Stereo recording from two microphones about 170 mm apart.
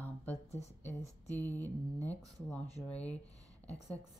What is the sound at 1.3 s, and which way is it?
Speech, 10° left (ahead or behind).